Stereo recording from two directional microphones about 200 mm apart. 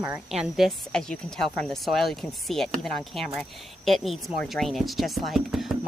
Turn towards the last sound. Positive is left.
turn(degrees=0)  # may be behind; listen again after turning